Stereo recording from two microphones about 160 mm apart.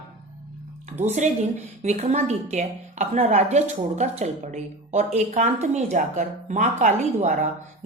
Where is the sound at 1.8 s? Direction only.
40° right (ahead or behind).